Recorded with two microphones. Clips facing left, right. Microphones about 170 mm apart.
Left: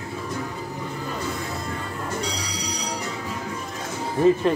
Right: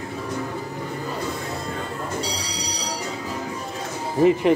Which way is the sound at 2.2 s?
30° right (ahead or behind).